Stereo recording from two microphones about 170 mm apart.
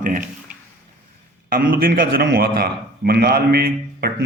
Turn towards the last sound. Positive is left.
turn(degrees=-65)  # may be behind; listen again after turning